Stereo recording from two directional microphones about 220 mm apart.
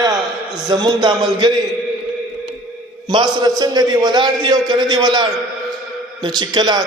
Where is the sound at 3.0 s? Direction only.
20° right (ahead or behind).